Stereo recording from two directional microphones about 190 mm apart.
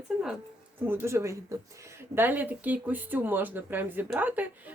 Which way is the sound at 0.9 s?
10° right (ahead or behind).